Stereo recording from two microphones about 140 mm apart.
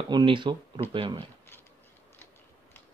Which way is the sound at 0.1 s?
35° right (ahead or behind).